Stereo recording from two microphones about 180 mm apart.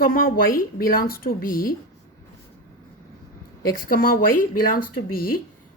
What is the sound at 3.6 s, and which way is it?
A woman's voice, 50° left (ahead or behind).